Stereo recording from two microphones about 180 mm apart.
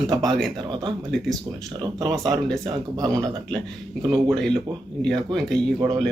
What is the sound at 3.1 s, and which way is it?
Speech, 5° left (ahead or behind).